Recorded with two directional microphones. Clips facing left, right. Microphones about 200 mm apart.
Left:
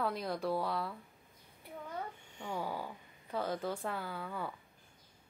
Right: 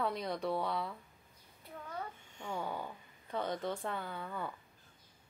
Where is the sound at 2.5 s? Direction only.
5° left (ahead or behind).